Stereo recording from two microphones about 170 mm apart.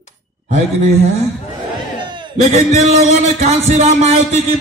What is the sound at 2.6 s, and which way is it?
Speech, 40° right (ahead or behind).